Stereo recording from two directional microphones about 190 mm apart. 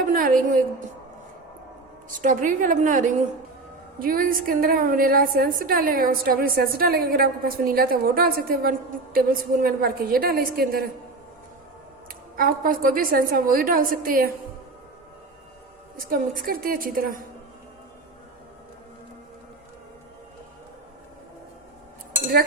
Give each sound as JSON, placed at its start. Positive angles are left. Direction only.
{"t": 0.0, "sound": "a sound", "side_deg": -45}
{"t": 2.2, "sound": "a woman's voice", "side_deg": -45}
{"t": 12.4, "sound": "a woman's voice", "side_deg": -50}
{"t": 16.0, "sound": "a woman's voice", "side_deg": -50}